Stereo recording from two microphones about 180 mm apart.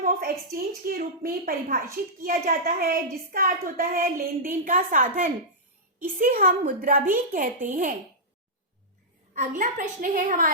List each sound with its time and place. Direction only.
0.0 s a woman's voice: 55° right (ahead or behind)
9.3 s a woman's voice: 45° right (ahead or behind)